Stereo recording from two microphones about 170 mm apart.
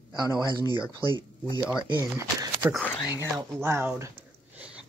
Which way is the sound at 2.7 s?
5° left (ahead or behind).